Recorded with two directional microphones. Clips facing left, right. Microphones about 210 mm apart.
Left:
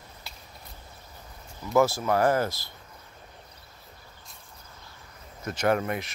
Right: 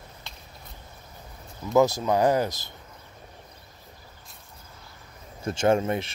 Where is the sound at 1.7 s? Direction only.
20° right (ahead or behind).